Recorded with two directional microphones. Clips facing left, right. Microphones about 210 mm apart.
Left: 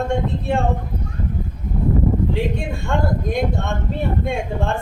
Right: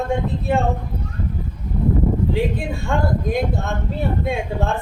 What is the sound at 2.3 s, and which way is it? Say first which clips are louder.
Speech: right 1 dB; centre (ahead or behind).